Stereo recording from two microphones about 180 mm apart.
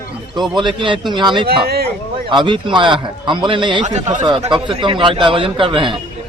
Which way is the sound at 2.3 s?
25° right (ahead or behind).